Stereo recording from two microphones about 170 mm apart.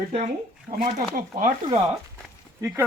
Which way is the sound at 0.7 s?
30° right (ahead or behind).